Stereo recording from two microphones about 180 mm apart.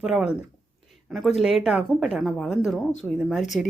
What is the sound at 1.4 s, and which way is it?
Speech, centre (ahead or behind).